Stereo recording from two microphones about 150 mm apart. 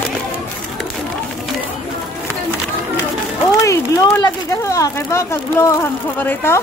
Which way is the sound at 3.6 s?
20° left (ahead or behind).